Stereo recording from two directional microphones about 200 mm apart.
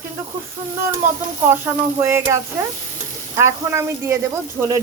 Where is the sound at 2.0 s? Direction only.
15° right (ahead or behind).